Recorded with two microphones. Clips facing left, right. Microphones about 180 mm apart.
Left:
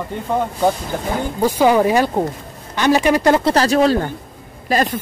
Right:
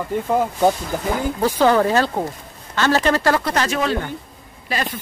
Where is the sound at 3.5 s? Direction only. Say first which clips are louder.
Left 6 dB; 35° left (ahead or behind).